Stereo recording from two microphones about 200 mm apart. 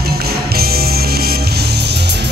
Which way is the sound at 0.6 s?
50° right (ahead or behind).